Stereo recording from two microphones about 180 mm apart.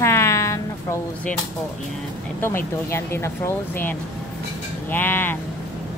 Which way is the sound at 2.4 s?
15° left (ahead or behind).